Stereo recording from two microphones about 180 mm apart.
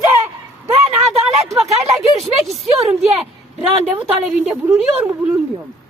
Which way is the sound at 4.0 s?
5° right (ahead or behind).